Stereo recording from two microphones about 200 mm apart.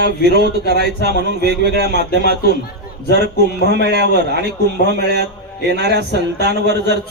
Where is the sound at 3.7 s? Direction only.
55° right (ahead or behind).